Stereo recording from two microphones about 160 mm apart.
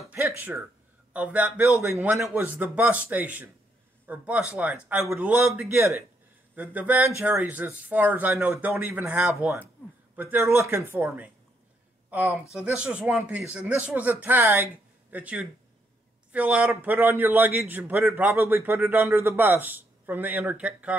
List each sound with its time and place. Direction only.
0.4 s a man's voice: 5° right (ahead or behind)
6.5 s a man's voice: 10° right (ahead or behind)